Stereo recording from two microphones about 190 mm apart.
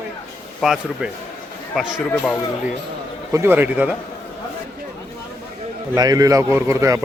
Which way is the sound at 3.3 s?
10° right (ahead or behind).